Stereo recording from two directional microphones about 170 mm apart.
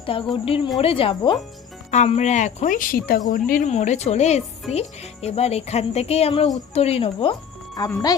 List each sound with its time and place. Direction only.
0.0 s speech: 30° left (ahead or behind); by 3.7 s 55° left (ahead or behind)
3.7 s speech: 40° left (ahead or behind)
7.8 s speech: 20° left (ahead or behind)